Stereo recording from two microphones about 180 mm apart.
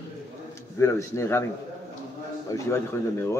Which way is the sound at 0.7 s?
15° left (ahead or behind).